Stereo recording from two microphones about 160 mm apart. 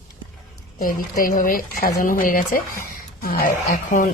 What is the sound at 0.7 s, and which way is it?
Speech, 60° left (ahead or behind).